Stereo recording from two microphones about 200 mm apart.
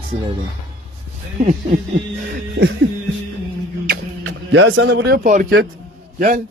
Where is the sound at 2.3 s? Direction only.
55° right (ahead or behind).